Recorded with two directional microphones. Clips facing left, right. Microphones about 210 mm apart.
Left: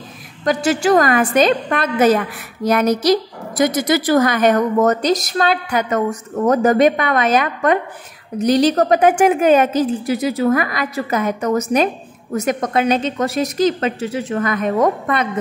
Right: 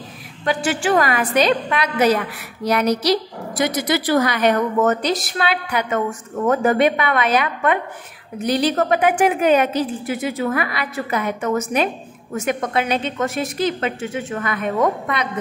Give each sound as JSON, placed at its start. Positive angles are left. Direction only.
{"t": 0.5, "sound": "a woman's voice", "side_deg": 40}